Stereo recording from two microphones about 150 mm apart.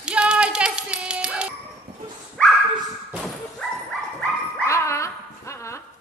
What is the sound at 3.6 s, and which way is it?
Dog, 5° left (ahead or behind).